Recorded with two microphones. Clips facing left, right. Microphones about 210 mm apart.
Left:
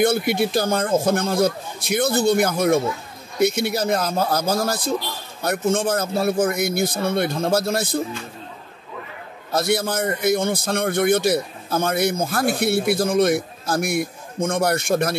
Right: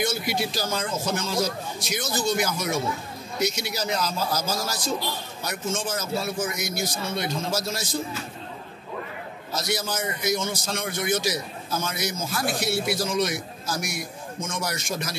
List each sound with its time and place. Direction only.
0.0 s a man's voice: 55° left (ahead or behind)
9.5 s a man's voice: 60° left (ahead or behind)